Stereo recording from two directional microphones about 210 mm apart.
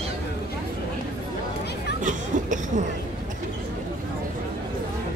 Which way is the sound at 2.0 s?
35° right (ahead or behind).